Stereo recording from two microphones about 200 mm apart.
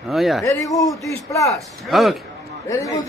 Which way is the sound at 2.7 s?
15° left (ahead or behind).